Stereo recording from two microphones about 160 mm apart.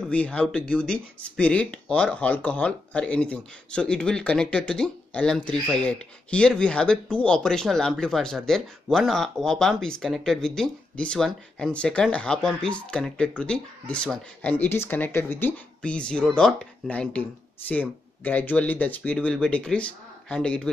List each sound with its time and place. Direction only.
0.1 s speech: 5° left (ahead or behind)